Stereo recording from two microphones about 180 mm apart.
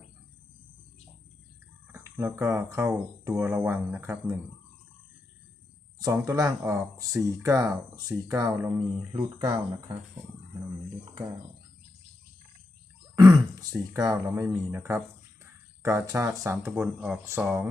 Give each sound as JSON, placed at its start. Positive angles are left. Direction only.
{"t": 1.9, "sound": "speech", "side_deg": -15}
{"t": 6.1, "sound": "speech", "side_deg": -15}
{"t": 13.1, "sound": "speech", "side_deg": -20}
{"t": 16.7, "sound": "speech", "side_deg": -5}